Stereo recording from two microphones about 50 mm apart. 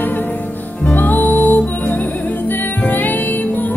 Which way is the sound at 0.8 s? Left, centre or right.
Left.